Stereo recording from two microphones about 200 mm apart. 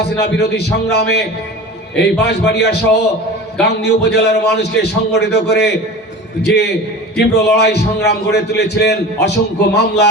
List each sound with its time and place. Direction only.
0.0 s a man's voice: 55° left (ahead or behind)